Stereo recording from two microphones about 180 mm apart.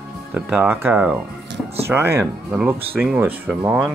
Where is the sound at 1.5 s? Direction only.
80° right.